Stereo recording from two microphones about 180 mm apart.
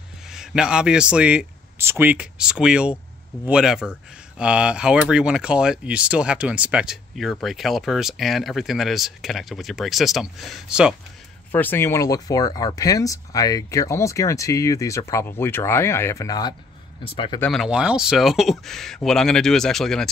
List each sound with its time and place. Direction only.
0.3 s a man's voice: 5° right (ahead or behind)
11.5 s speech: 10° left (ahead or behind); by 17.4 s 25° left (ahead or behind)
17.4 s speech: centre (ahead or behind)